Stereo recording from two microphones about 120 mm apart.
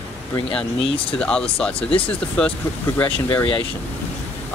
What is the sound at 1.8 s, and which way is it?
Speech, 50° left (ahead or behind).